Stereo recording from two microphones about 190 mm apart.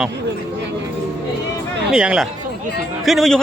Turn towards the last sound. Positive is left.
turn(degrees=0)  # may be behind; listen again after turning